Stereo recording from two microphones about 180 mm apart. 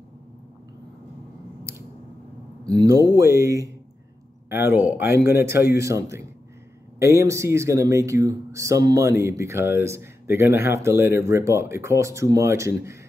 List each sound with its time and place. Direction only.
2.7 s speech: 20° right (ahead or behind)